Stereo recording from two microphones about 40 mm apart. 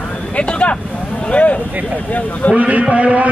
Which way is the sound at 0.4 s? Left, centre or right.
Left.